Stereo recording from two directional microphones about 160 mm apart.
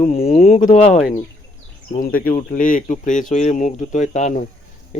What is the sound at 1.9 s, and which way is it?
Speech, 60° left (ahead or behind).